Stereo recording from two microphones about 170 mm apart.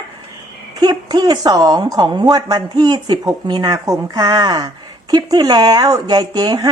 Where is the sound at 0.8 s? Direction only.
25° right (ahead or behind).